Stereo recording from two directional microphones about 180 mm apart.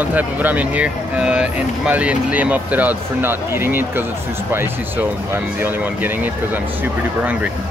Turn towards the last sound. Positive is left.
turn(degrees=-10)  # may be behind; listen again after turning